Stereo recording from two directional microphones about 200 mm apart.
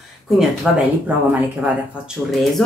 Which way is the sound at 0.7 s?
Centre (ahead or behind).